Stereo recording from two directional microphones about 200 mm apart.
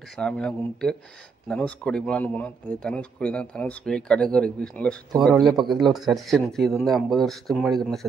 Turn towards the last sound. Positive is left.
turn(degrees=0)  # may be behind; listen again after turning